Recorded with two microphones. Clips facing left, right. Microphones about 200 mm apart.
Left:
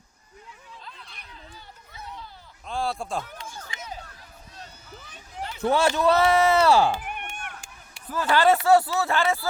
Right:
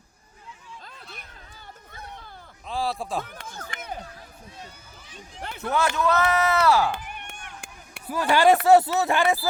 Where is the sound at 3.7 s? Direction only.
60° right (ahead or behind).